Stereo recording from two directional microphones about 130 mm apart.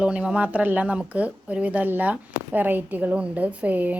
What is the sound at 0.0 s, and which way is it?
Speech, 10° right (ahead or behind).